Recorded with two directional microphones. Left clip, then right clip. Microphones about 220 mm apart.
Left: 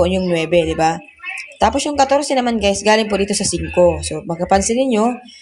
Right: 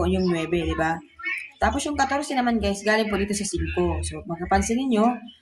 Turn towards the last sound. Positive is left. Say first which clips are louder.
# left 7 dB
turn(degrees=25)  # may be behind; listen again after turning